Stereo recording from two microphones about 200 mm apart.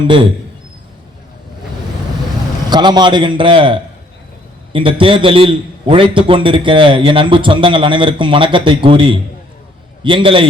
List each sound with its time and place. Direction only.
2.6 s a man's voice: 20° right (ahead or behind)